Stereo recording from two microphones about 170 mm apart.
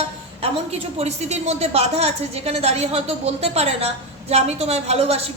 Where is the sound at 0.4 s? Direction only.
35° right (ahead or behind).